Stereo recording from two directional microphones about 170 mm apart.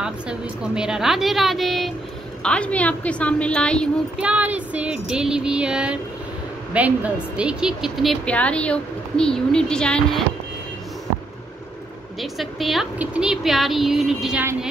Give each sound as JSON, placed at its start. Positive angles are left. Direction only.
{"t": 0.0, "sound": "a woman's voice", "side_deg": -5}
{"t": 4.2, "sound": "speech", "side_deg": -10}
{"t": 12.2, "sound": "speech", "side_deg": 0}